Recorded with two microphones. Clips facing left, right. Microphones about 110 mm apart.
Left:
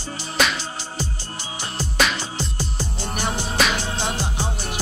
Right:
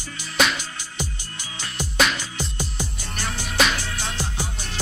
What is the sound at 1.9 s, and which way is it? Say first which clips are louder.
Music: even; centre (ahead or behind).